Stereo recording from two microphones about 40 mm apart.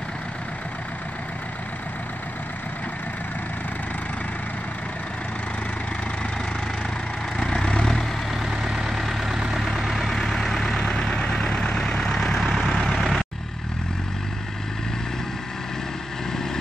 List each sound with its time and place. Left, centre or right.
7.3 s vehicle: centre
8.3 s vehicle: centre